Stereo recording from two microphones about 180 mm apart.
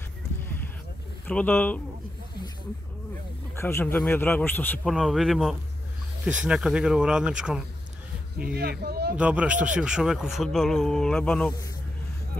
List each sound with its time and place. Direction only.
1.2 s a man's voice: 10° left (ahead or behind)
3.5 s a man's voice: 10° left (ahead or behind); by 7.6 s 5° right (ahead or behind)
8.5 s speech: 60° right (ahead or behind)
9.1 s speech: 5° right (ahead or behind)